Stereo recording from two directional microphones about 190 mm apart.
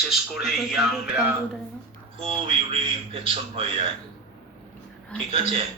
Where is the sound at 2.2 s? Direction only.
30° right (ahead or behind).